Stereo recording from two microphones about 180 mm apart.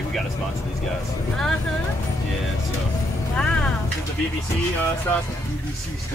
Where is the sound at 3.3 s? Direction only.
5° left (ahead or behind).